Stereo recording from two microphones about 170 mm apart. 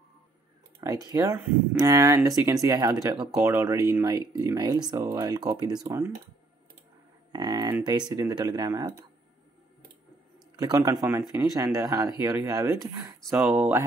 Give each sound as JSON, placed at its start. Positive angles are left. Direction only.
{"t": 0.7, "sound": "speech", "side_deg": -20}
{"t": 7.3, "sound": "a sound", "side_deg": -25}
{"t": 7.8, "sound": "speech", "side_deg": -25}
{"t": 10.6, "sound": "speech", "side_deg": -20}